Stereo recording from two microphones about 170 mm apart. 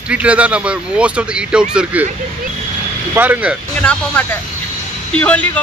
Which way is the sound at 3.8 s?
5° left (ahead or behind).